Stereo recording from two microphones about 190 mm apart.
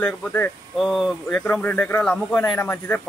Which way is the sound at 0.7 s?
Centre (ahead or behind).